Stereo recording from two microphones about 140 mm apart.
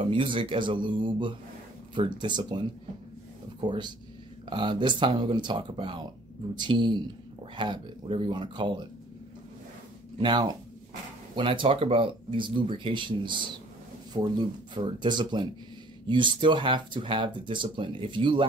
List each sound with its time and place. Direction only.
0.0 s speech: 40° right (ahead or behind)
3.6 s speech: 35° right (ahead or behind)
10.1 s speech: 35° right (ahead or behind)